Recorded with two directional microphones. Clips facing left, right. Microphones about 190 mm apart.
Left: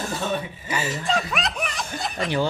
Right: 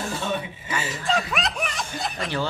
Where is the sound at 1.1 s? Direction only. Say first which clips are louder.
Right 2 dB; centre (ahead or behind).